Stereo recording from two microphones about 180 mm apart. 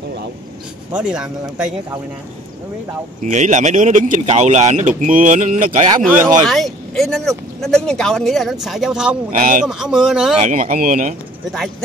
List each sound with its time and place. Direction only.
0.9 s speech: 5° right (ahead or behind)
3.2 s speech: 45° right (ahead or behind)
6.4 s speech: centre (ahead or behind)
9.4 s speech: 50° right (ahead or behind)
9.7 s speech: 5° right (ahead or behind)
10.3 s speech: 45° right (ahead or behind)